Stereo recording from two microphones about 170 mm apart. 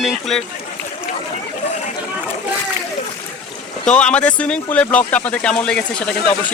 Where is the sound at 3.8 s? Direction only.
5° left (ahead or behind).